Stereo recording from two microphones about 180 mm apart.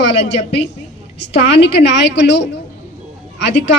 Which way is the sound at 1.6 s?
70° left (ahead or behind).